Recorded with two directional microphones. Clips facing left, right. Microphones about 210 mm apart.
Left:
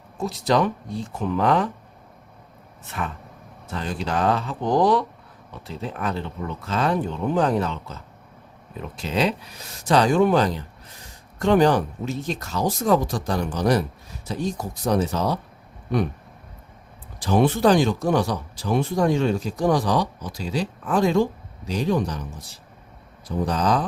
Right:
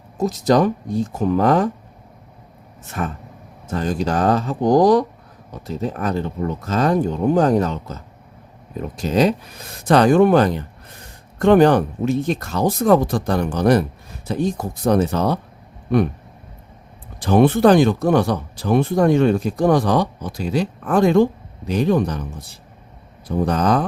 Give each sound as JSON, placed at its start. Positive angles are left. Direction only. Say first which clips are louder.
{"t": 0.2, "sound": "speech", "louder": "right 5 dB", "side_deg": -45}
{"t": 3.0, "sound": "speech", "louder": "right 5 dB", "side_deg": -45}
{"t": 17.2, "sound": "speech", "louder": "right 5 dB", "side_deg": -55}